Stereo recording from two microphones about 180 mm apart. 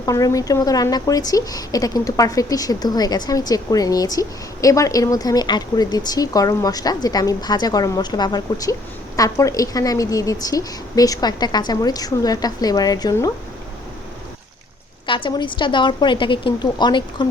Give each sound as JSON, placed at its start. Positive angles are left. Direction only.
{"t": 0.0, "sound": "a woman's voice", "side_deg": 20}
{"t": 15.0, "sound": "a woman's voice", "side_deg": 30}